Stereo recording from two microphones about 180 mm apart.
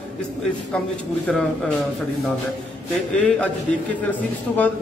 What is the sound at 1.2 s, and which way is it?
Speech, centre (ahead or behind).